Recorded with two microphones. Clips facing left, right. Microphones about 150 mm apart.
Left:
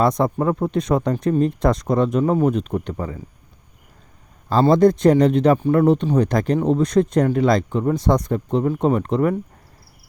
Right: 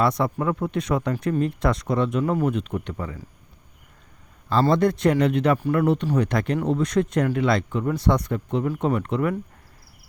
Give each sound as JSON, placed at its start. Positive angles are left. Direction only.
{"t": 0.0, "sound": "speech", "side_deg": 35}
{"t": 4.7, "sound": "speech", "side_deg": 35}